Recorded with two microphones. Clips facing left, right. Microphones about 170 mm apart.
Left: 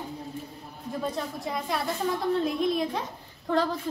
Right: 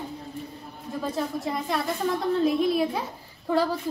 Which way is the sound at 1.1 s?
Centre (ahead or behind).